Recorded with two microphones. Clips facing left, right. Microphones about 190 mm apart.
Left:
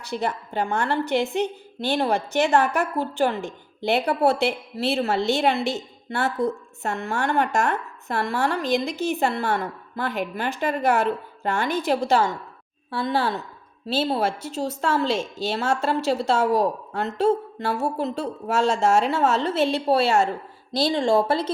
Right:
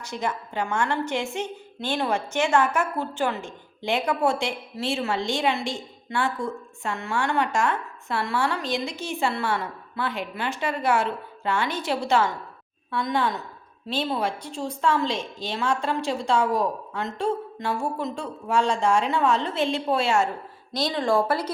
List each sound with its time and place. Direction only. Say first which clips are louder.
0.0 s a woman's voice: left 2 dB; 35° left (ahead or behind)
15.1 s a woman's voice: left 5 dB; 10° left (ahead or behind)
15.5 s a woman's voice: left 2 dB; 40° left (ahead or behind)